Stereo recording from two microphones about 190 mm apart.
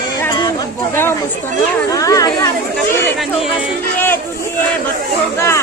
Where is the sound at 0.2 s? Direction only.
20° left (ahead or behind).